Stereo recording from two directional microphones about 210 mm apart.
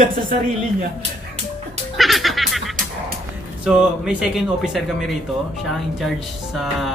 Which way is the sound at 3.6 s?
5° right (ahead or behind).